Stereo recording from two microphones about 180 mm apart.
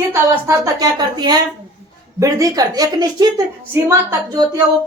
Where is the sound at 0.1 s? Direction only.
20° right (ahead or behind).